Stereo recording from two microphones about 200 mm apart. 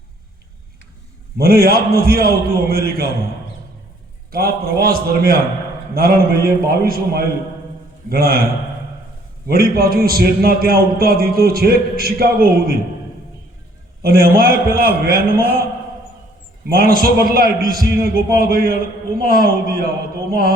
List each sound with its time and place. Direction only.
1.4 s a man's voice: 50° right (ahead or behind)
4.3 s a man's voice: 50° right (ahead or behind)
9.5 s a man's voice: 50° right (ahead or behind)
14.0 s a man's voice: 50° right (ahead or behind)
16.6 s a man's voice: 50° right (ahead or behind)